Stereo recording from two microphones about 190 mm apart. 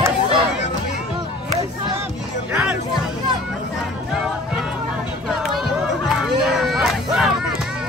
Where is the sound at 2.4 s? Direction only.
10° right (ahead or behind).